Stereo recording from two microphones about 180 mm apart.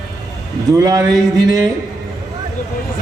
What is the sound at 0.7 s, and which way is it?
Speech, 20° right (ahead or behind).